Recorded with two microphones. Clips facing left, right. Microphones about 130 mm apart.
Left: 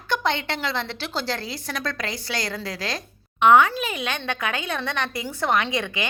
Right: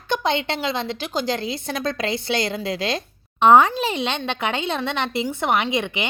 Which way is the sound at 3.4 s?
35° right (ahead or behind).